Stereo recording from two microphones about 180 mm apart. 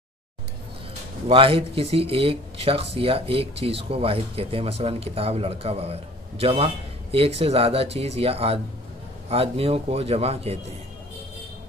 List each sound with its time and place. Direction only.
1.2 s speech: 30° right (ahead or behind)